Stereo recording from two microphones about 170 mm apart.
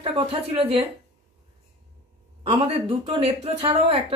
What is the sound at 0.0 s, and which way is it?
Speech, 35° right (ahead or behind).